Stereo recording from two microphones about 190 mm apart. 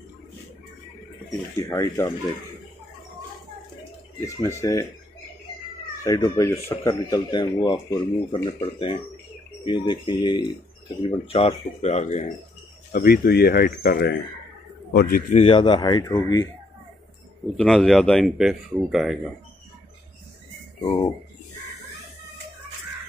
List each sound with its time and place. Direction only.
1.6 s speech: 15° left (ahead or behind)
4.2 s speech: 15° left (ahead or behind)
6.0 s speech: 20° left (ahead or behind); by 12.3 s 35° left (ahead or behind)
12.9 s speech: 50° left (ahead or behind)
15.3 s speech: 25° left (ahead or behind)
17.6 s speech: 5° left (ahead or behind)